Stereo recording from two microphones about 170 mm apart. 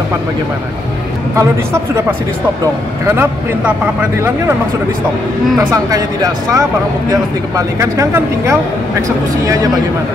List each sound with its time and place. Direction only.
1.3 s speech: 15° right (ahead or behind)
5.6 s speech: 20° right (ahead or behind)